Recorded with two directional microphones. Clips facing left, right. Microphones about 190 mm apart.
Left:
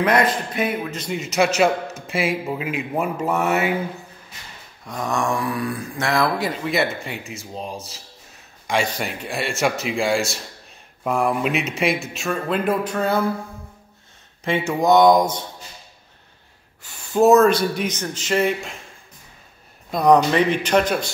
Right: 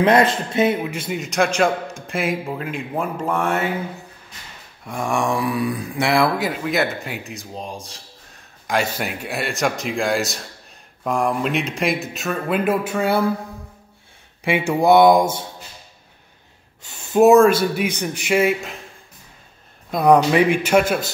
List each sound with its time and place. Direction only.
0.0 s speech: 25° right (ahead or behind)
0.9 s a man's voice: 5° right (ahead or behind)
4.8 s a man's voice: 10° right (ahead or behind)
14.7 s speech: 10° right (ahead or behind)
16.8 s speech: 20° right (ahead or behind)
19.9 s speech: 5° right (ahead or behind)